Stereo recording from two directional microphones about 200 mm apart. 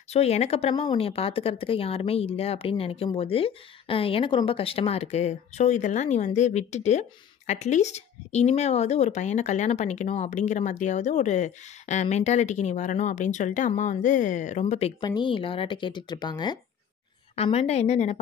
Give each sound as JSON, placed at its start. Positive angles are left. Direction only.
{"t": 0.1, "sound": "speech", "side_deg": 30}